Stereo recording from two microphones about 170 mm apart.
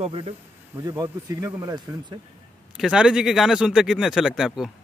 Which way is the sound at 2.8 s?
5° right (ahead or behind).